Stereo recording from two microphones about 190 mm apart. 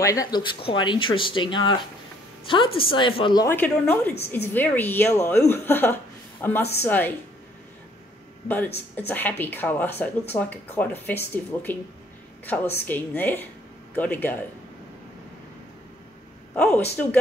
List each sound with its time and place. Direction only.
0.0 s speech: 20° left (ahead or behind)
3.4 s speech: 10° left (ahead or behind)
8.9 s speech: 10° left (ahead or behind)
16.5 s speech: 5° left (ahead or behind)